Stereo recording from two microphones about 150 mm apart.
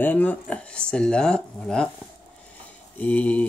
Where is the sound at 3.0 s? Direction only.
10° left (ahead or behind).